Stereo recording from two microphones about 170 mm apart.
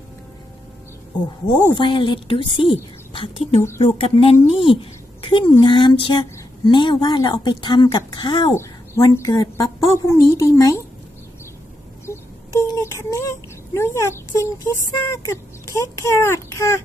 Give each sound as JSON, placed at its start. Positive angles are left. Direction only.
{"t": 1.7, "sound": "a woman's voice", "side_deg": 30}
{"t": 12.1, "sound": "a sound", "side_deg": 15}
{"t": 12.5, "sound": "child singing", "side_deg": 15}
{"t": 13.7, "sound": "a woman's voice", "side_deg": 15}